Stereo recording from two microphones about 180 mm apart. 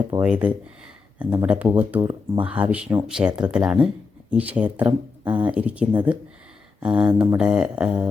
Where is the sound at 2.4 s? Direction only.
5° right (ahead or behind).